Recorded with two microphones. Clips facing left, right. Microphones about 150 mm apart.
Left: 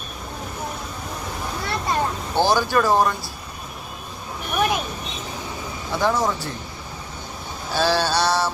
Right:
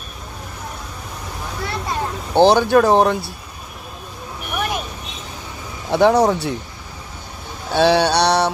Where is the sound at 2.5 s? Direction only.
60° right (ahead or behind).